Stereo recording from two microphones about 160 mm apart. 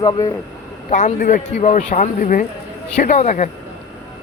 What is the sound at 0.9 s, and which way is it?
Speech, 50° left (ahead or behind).